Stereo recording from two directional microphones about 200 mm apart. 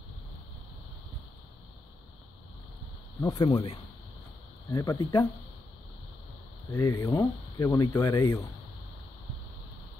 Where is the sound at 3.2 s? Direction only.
20° left (ahead or behind).